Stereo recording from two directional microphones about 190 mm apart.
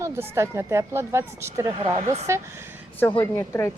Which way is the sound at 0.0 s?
15° right (ahead or behind).